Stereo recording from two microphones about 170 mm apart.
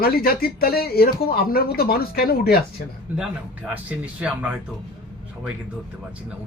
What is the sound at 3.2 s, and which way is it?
Speech, 10° right (ahead or behind).